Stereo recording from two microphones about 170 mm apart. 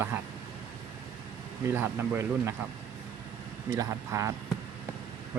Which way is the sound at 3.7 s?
20° right (ahead or behind).